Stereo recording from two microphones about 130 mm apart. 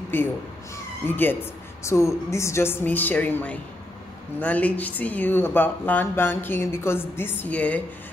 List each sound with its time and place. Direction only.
0.1 s speech: 15° left (ahead or behind)